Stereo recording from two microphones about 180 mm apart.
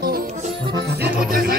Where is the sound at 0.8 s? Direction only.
60° right (ahead or behind).